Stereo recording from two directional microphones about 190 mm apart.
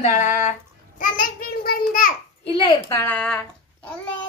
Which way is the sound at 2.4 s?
30° left (ahead or behind).